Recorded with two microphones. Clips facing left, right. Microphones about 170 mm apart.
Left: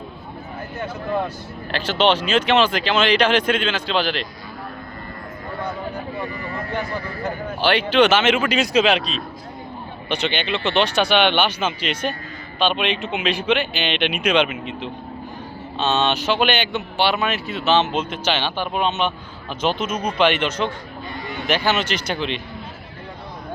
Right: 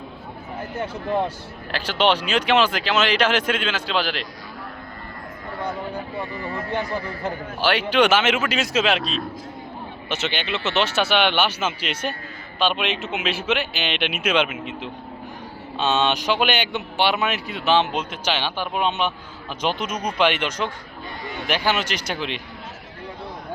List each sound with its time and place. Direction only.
1.7 s speech: 10° right (ahead or behind)
6.3 s speech: 25° right (ahead or behind)
7.6 s speech: 5° right (ahead or behind)